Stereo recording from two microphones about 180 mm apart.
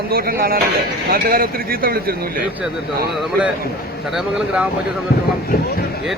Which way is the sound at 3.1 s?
Centre (ahead or behind).